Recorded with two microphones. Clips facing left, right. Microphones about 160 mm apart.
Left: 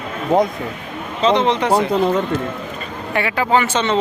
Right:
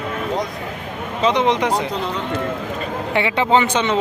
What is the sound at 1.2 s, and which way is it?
Speech, 15° right (ahead or behind).